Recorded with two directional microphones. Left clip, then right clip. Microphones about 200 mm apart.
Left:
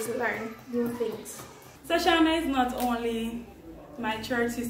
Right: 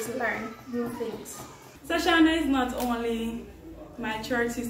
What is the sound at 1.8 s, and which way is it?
A woman's voice, 10° left (ahead or behind).